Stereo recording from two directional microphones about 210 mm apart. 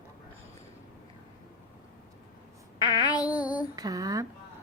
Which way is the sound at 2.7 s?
20° left (ahead or behind).